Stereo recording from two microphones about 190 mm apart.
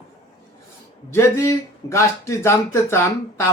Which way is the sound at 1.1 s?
15° left (ahead or behind).